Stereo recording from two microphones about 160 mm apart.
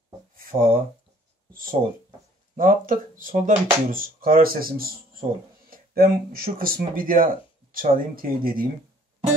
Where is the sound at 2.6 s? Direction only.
60° right (ahead or behind).